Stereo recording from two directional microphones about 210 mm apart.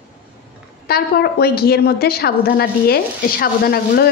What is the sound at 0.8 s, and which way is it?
A woman's voice, 50° left (ahead or behind).